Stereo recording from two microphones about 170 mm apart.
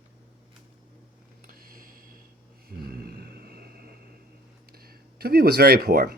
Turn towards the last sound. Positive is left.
turn(degrees=-65)  # may be behind; listen again after turning